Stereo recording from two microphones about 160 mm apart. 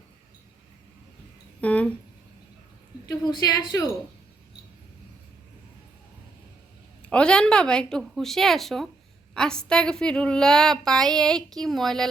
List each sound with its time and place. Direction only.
1.6 s speech: 10° left (ahead or behind)
3.1 s a woman's voice: 25° left (ahead or behind)
7.0 s a woman's voice: 5° left (ahead or behind)